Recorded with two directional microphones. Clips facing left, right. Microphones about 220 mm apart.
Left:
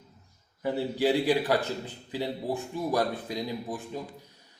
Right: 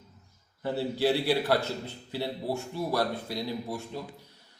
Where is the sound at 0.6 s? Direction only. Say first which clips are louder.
Left 1 dB; 15° left (ahead or behind).